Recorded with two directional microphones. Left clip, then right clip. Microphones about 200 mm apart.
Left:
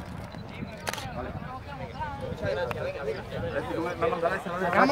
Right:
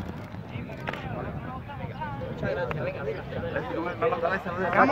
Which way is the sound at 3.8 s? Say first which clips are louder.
Right 1 dB; 45° right (ahead or behind).